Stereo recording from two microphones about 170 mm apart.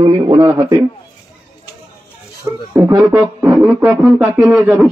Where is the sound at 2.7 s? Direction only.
10° right (ahead or behind).